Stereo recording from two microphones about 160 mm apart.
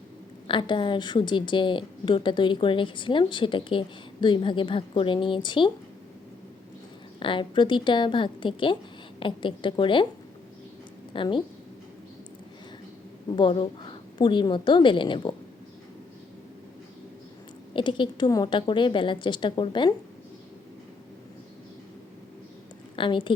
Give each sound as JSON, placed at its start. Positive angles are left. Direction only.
{"t": 0.4, "sound": "a woman's voice", "side_deg": 30}
{"t": 7.2, "sound": "a woman's voice", "side_deg": 30}
{"t": 11.1, "sound": "a woman's voice", "side_deg": 30}
{"t": 13.2, "sound": "a woman's voice", "side_deg": 30}
{"t": 17.7, "sound": "a woman's voice", "side_deg": 30}
{"t": 23.0, "sound": "a woman's voice", "side_deg": 30}